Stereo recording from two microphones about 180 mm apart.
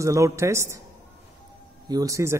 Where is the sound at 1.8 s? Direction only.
20° right (ahead or behind).